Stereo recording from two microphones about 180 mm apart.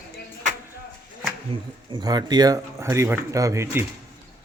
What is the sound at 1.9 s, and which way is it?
Speech, 25° right (ahead or behind).